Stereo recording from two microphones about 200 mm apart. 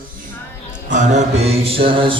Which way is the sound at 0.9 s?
35° right (ahead or behind).